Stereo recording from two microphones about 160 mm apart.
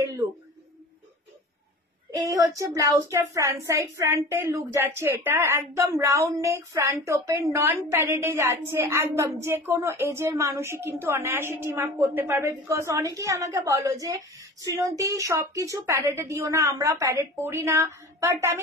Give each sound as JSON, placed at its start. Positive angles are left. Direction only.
{"t": 2.1, "sound": "a woman's voice", "side_deg": -20}